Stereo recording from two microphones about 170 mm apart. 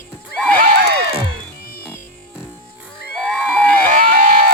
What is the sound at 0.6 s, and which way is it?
Crowd, 50° right (ahead or behind).